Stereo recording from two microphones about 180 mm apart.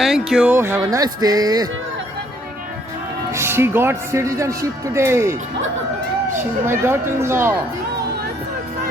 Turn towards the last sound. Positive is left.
turn(degrees=-15)  # may be behind; listen again after turning